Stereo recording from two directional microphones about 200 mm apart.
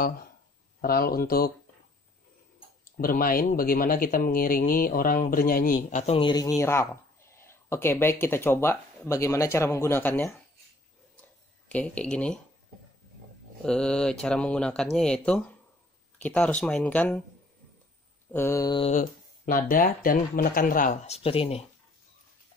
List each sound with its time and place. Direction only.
0.7 s speech: 50° left (ahead or behind)
3.0 s speech: 45° left (ahead or behind); by 10.4 s 10° left (ahead or behind)
11.7 s speech: 5° left (ahead or behind)
13.7 s speech: 5° left (ahead or behind)
18.3 s speech: 15° left (ahead or behind)
18.9 s speech: 40° left (ahead or behind)